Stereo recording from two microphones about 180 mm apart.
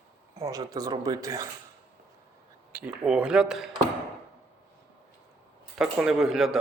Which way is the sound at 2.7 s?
10° right (ahead or behind).